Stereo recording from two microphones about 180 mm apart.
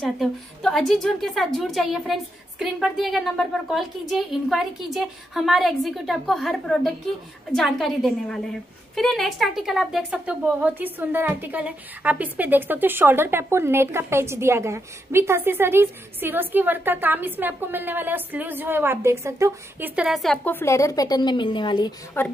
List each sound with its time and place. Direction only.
0.0 s a woman's voice: centre (ahead or behind); by 19.9 s 15° right (ahead or behind)
20.0 s a woman's voice: centre (ahead or behind)
20.5 s a woman's voice: 15° left (ahead or behind)
22.2 s a woman's voice: 10° left (ahead or behind)